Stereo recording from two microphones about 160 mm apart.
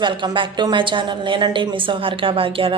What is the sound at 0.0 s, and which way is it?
A woman's voice, 30° right (ahead or behind).